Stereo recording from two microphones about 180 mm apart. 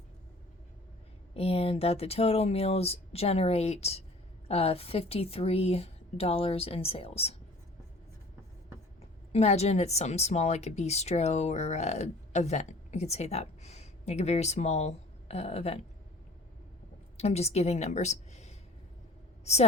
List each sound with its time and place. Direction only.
1.3 s a woman's voice: 35° left (ahead or behind)
9.3 s a woman's voice: 35° left (ahead or behind)
17.2 s a woman's voice: 35° left (ahead or behind)